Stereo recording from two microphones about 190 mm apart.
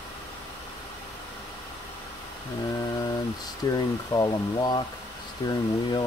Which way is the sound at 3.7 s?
20° left (ahead or behind).